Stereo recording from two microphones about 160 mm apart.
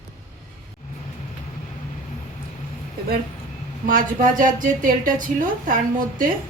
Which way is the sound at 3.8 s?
60° right (ahead or behind).